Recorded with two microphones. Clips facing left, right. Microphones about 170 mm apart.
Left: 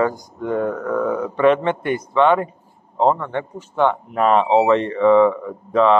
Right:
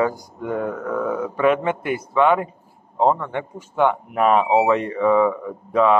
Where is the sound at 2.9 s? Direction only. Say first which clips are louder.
Left 1 dB; 10° right (ahead or behind).